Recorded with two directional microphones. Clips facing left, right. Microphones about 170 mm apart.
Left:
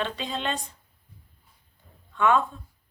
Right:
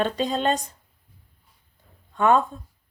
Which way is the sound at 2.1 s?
40° right (ahead or behind).